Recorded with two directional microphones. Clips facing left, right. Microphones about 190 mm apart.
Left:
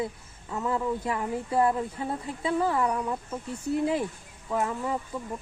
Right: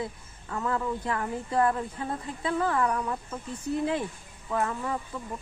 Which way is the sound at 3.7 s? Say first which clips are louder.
Left 2 dB; 5° left (ahead or behind).